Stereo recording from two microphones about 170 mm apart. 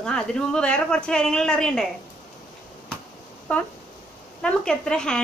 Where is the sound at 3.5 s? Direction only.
10° left (ahead or behind).